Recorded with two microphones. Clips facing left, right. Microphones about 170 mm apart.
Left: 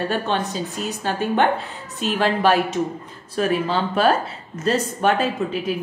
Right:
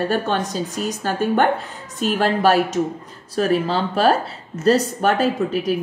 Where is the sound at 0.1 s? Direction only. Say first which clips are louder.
Right 2 dB; 45° right (ahead or behind).